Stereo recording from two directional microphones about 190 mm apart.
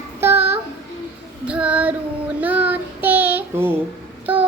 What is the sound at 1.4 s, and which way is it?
Child singing, 5° right (ahead or behind).